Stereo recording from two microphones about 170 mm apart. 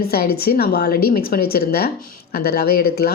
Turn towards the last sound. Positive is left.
turn(degrees=65)  # may be behind; listen again after turning